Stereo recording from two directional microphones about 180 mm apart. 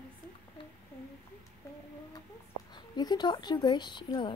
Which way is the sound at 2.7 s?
25° left (ahead or behind).